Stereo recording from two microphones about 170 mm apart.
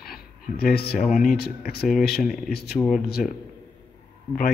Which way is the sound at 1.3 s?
70° left (ahead or behind).